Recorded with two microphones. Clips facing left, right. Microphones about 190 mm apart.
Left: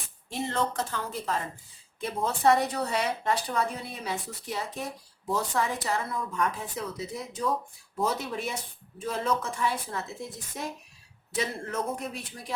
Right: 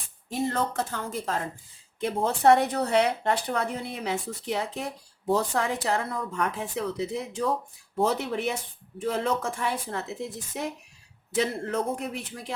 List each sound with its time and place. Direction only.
0.3 s speech: 45° right (ahead or behind)
1.2 s speech: 65° right (ahead or behind)